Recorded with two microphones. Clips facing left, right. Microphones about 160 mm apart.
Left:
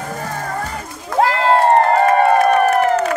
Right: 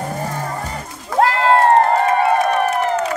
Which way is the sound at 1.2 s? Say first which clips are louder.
Even; centre (ahead or behind).